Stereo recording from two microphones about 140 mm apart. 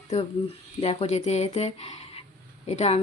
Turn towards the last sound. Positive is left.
turn(degrees=50)  # may be behind; listen again after turning